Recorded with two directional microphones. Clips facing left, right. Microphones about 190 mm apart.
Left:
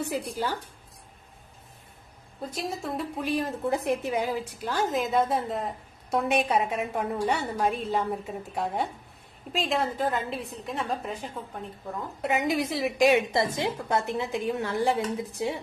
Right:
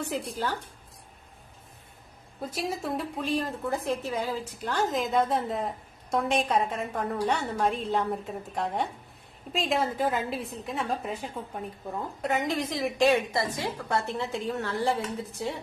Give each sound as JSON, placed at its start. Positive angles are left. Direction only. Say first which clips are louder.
{"t": 0.0, "sound": "a woman's voice", "louder": "left 1 dB", "side_deg": 10}
{"t": 2.4, "sound": "a woman's voice", "louder": "right 1 dB", "side_deg": 0}
{"t": 3.2, "sound": "a woman's voice", "louder": "left 3 dB", "side_deg": 15}
{"t": 12.2, "sound": "a woman's voice", "louder": "left 2 dB", "side_deg": 10}
{"t": 13.1, "sound": "a woman's voice", "louder": "left 3 dB", "side_deg": 20}